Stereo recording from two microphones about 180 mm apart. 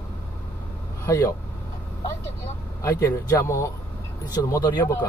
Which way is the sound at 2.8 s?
15° left (ahead or behind).